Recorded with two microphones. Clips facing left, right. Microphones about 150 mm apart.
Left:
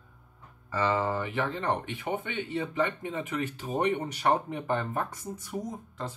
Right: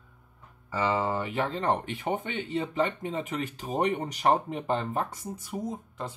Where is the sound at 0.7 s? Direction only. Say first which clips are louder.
Even; 15° right (ahead or behind).